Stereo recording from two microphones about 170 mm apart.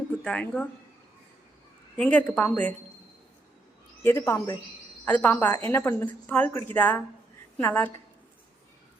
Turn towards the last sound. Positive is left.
turn(degrees=10)  # may be behind; listen again after turning